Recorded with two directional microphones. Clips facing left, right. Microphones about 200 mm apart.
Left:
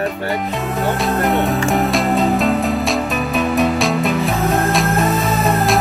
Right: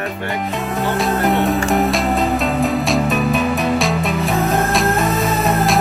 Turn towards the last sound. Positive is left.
turn(degrees=0)  # may be behind; listen again after turning